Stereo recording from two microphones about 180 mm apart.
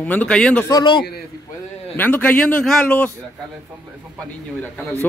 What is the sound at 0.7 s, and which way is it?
Speech, 25° left (ahead or behind).